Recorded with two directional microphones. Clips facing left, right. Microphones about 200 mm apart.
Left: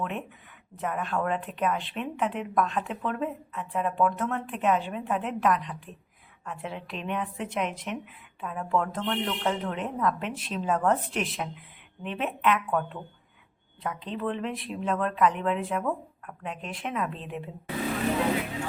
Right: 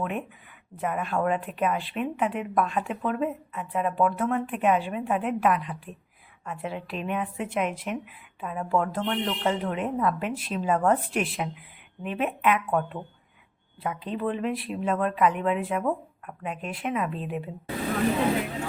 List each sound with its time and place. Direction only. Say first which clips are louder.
0.0 s a woman's voice: right 2 dB; 10° right (ahead or behind)